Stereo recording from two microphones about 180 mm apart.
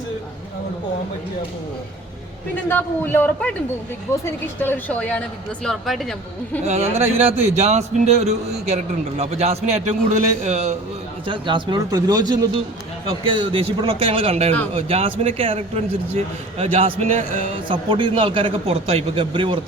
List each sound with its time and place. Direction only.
2.6 s a man's voice: 10° left (ahead or behind)
4.6 s a man's voice: 10° left (ahead or behind)
6.7 s a man's voice: 35° right (ahead or behind)
11.3 s a man's voice: 25° right (ahead or behind)